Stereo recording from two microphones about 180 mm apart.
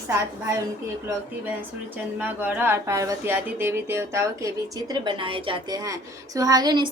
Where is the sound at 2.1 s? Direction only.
10° right (ahead or behind).